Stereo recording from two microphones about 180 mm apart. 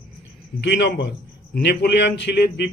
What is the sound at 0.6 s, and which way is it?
A man's voice, 70° left (ahead or behind).